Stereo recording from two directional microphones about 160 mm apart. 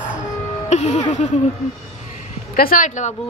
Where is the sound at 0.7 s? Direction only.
45° left (ahead or behind).